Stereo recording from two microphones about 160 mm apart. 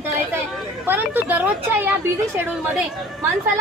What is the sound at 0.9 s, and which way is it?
Speech, 10° right (ahead or behind).